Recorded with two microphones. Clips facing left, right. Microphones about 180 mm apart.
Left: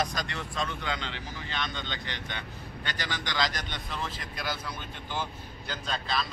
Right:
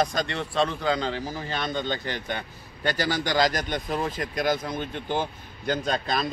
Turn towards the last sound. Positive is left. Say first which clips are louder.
# right 6 dB
turn(degrees=-50)  # may be behind; listen again after turning